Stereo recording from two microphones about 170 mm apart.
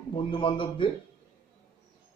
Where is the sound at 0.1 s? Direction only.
30° left (ahead or behind).